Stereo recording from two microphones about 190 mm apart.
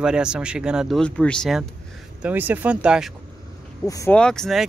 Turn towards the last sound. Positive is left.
turn(degrees=0)  # may be behind; listen again after turning